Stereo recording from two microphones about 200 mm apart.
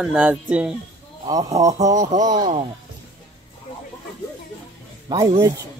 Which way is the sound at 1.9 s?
35° right (ahead or behind).